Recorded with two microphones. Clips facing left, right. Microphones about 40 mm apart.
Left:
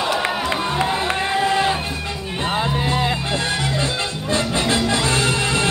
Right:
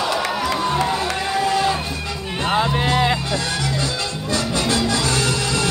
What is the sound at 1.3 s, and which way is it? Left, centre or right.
Run, left.